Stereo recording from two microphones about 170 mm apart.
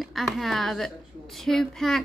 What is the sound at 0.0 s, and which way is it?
A woman's voice, centre (ahead or behind).